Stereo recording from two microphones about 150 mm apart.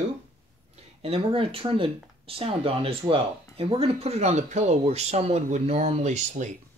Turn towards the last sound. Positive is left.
turn(degrees=-50)  # may be behind; listen again after turning